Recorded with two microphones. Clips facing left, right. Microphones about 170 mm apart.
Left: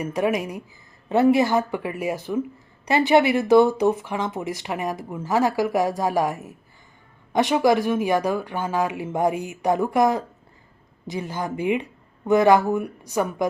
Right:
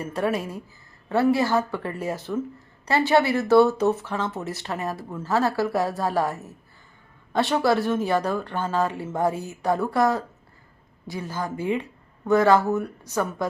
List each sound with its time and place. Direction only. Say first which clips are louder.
0.0 s speech: left 3 dB; 15° left (ahead or behind)